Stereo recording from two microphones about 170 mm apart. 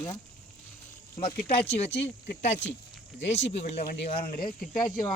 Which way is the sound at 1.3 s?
60° left (ahead or behind).